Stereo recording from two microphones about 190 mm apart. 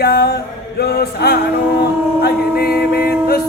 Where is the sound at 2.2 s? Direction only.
55° left (ahead or behind).